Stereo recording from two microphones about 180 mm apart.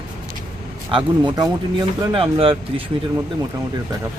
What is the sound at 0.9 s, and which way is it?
Speech, 25° right (ahead or behind).